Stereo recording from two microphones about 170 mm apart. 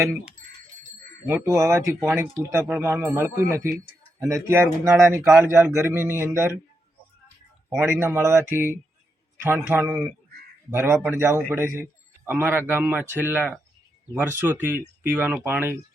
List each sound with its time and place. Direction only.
1.3 s a man's voice: 15° right (ahead or behind)
7.9 s a man's voice: 15° right (ahead or behind)